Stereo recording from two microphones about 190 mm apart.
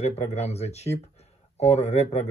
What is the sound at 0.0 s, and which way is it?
Speech, 35° left (ahead or behind).